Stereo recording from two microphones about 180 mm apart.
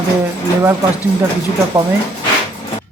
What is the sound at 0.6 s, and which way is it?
Speech, 10° right (ahead or behind).